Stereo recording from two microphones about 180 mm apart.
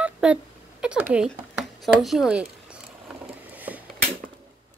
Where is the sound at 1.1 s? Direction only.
5° right (ahead or behind).